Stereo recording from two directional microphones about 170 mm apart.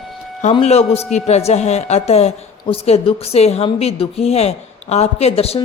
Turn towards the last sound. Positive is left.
turn(degrees=35)  # may be behind; listen again after turning